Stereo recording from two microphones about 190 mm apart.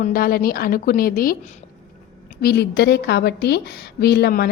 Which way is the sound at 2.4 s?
60° left (ahead or behind).